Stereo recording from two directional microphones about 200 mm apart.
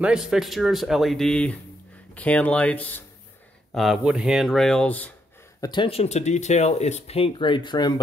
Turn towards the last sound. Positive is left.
turn(degrees=20)  # may be behind; listen again after turning